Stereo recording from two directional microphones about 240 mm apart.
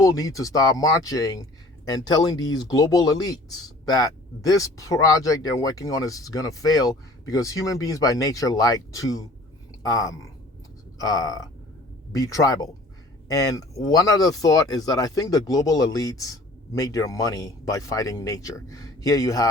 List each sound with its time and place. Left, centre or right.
0.0 s speech: centre